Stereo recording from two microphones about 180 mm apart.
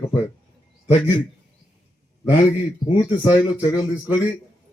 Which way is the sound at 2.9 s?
25° left (ahead or behind).